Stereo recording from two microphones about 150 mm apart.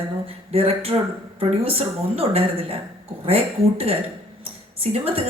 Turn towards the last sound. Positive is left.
turn(degrees=-40)  # may be behind; listen again after turning